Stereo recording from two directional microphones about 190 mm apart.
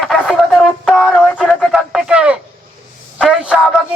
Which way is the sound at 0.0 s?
Centre (ahead or behind).